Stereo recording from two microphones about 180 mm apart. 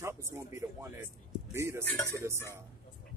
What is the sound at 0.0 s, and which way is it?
Speech, 15° right (ahead or behind).